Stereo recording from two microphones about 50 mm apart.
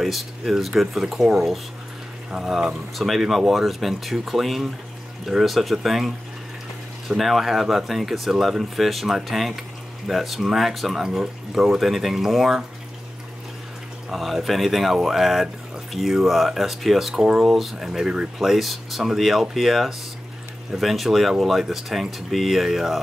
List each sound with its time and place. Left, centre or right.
0.0 s speech: centre
2.3 s speech: centre
14.1 s speech: centre
17.1 s speech: centre
17.5 s speech: centre